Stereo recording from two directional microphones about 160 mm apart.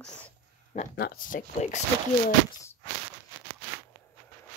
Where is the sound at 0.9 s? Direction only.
70° left (ahead or behind); by 1.8 s 55° left (ahead or behind).